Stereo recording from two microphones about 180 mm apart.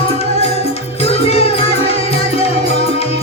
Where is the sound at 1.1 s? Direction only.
35° left (ahead or behind).